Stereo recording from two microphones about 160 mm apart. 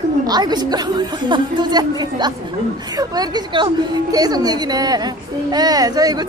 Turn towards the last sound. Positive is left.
turn(degrees=-25)  # may be behind; listen again after turning